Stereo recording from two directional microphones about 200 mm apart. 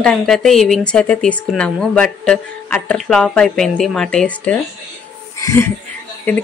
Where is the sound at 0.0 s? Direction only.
Centre (ahead or behind).